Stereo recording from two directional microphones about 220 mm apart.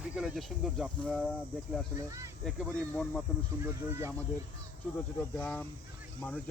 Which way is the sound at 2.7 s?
5° left (ahead or behind).